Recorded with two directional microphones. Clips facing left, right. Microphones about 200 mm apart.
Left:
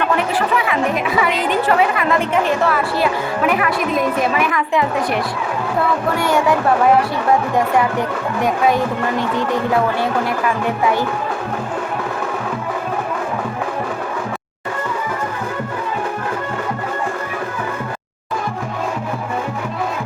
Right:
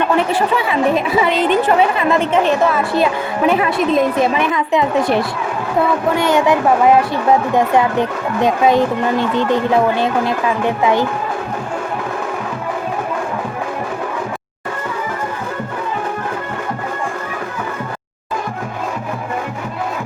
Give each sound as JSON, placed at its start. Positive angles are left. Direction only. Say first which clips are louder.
{"t": 1.2, "sound": "a woman's voice", "louder": "right 3 dB", "side_deg": -25}
{"t": 6.1, "sound": "a woman's voice", "louder": "right 2 dB", "side_deg": -20}
{"t": 8.4, "sound": "a woman's voice", "louder": "right 3 dB", "side_deg": -20}